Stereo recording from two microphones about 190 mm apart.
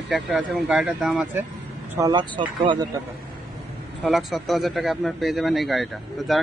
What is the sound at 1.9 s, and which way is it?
Speech, 20° right (ahead or behind).